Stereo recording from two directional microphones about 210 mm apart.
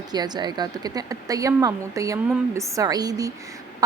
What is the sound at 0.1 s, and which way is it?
A woman's voice, 20° right (ahead or behind).